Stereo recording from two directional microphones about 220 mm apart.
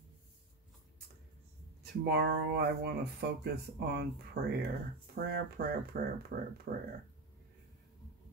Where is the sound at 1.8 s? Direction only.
45° right (ahead or behind).